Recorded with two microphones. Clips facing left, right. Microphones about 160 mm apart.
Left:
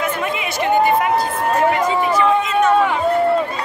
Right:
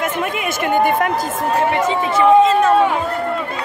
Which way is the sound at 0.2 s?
50° right (ahead or behind).